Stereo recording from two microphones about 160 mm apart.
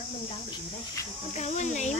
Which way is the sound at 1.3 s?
45° left (ahead or behind).